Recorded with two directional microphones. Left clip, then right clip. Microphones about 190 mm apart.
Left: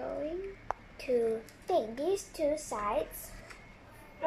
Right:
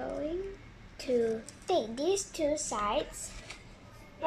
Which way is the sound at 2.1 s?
5° right (ahead or behind).